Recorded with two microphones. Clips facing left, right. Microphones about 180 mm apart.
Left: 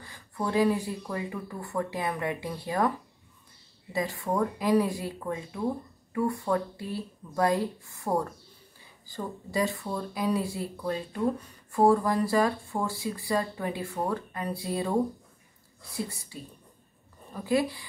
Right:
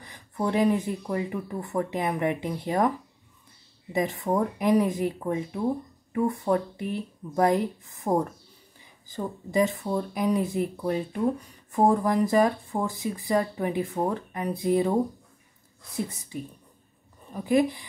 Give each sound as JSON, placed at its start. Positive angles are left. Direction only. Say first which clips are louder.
{"t": 0.0, "sound": "speech", "louder": "right 4 dB", "side_deg": -20}
{"t": 3.9, "sound": "speech", "louder": "right 4 dB", "side_deg": -20}